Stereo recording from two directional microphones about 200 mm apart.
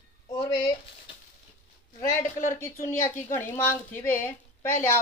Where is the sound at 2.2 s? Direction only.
40° left (ahead or behind).